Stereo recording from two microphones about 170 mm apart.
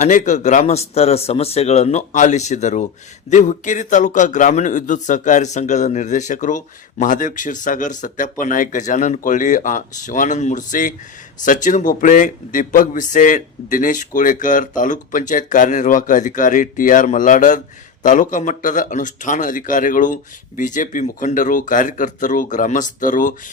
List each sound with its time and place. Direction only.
0.0 s speech: 45° left (ahead or behind)